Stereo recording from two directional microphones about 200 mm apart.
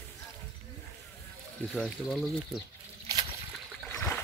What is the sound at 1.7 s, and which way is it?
Speech, centre (ahead or behind).